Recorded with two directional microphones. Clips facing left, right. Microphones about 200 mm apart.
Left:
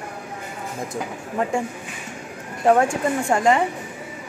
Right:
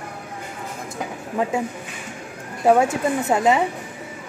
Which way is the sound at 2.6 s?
5° right (ahead or behind).